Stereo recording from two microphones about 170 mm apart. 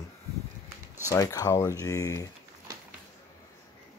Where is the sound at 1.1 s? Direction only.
20° left (ahead or behind).